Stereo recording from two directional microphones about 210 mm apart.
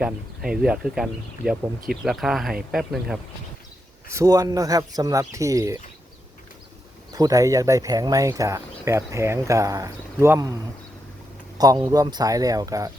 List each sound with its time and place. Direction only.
0.0 s speech: 5° right (ahead or behind)
4.1 s speech: 15° right (ahead or behind)
7.1 s speech: 15° right (ahead or behind)
11.5 s speech: 20° right (ahead or behind)